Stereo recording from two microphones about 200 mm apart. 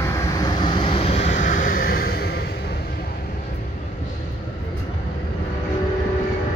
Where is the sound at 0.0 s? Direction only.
15° left (ahead or behind); by 2.5 s 55° left (ahead or behind).